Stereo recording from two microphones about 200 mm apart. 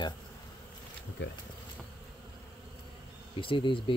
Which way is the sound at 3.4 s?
25° left (ahead or behind).